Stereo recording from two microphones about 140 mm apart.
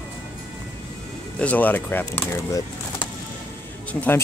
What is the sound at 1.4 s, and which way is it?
Speech, 10° left (ahead or behind).